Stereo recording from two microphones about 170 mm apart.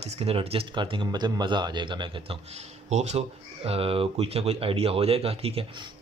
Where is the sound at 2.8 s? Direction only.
40° right (ahead or behind).